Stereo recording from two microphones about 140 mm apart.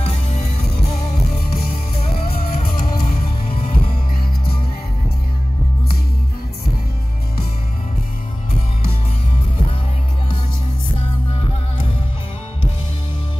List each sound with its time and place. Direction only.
0.0 s music: 45° left (ahead or behind)
2.2 s music: 90° left
3.4 s music: 40° left (ahead or behind)